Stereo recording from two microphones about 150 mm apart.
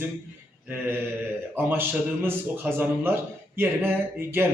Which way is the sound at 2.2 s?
15° right (ahead or behind).